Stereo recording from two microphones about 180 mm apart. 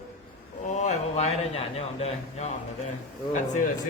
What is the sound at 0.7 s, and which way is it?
Speech, 40° left (ahead or behind).